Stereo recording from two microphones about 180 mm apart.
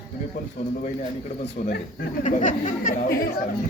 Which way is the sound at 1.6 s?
50° left (ahead or behind).